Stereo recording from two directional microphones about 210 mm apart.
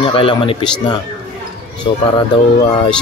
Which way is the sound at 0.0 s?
25° left (ahead or behind).